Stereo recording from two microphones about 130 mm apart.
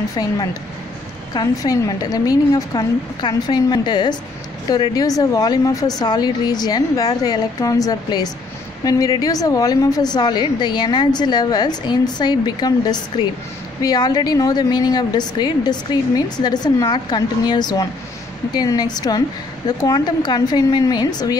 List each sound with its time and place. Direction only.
0.1 s a woman's voice: 30° left (ahead or behind)